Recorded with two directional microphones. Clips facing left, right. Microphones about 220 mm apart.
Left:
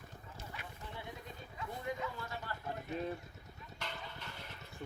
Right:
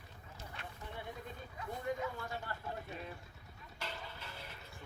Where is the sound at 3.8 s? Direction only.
5° right (ahead or behind).